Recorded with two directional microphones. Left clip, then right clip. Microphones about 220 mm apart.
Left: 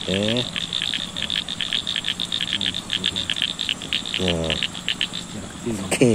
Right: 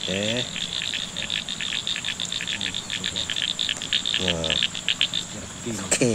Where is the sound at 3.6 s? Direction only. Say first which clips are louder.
Even; 30° left (ahead or behind).